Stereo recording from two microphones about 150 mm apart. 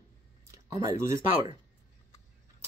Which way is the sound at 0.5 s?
20° right (ahead or behind).